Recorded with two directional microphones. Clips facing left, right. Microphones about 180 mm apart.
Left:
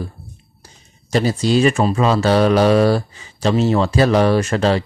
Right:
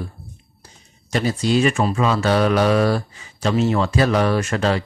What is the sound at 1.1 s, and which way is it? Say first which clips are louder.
Speech: left 3 dB; 35° left (ahead or behind).